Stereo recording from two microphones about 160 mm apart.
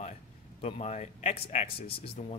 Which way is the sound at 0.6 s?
40° left (ahead or behind).